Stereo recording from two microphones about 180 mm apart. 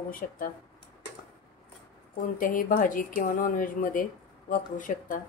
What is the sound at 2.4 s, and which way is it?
Speech, 50° left (ahead or behind).